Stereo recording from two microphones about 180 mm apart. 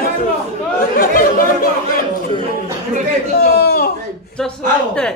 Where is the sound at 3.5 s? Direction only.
60° left (ahead or behind).